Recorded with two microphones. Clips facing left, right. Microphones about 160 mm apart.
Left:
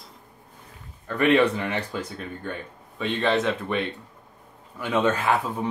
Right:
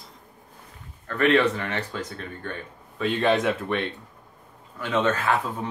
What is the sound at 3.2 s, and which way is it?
Speech, 15° right (ahead or behind).